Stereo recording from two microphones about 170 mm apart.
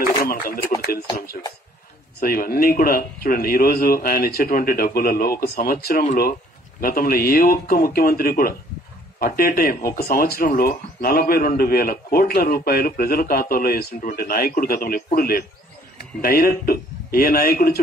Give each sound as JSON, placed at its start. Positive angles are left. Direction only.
{"t": 0.0, "sound": "speech", "side_deg": 60}